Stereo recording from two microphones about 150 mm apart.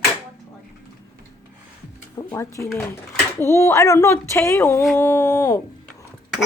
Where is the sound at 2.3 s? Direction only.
20° left (ahead or behind).